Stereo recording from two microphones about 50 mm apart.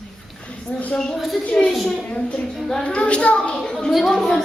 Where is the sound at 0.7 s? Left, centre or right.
Left.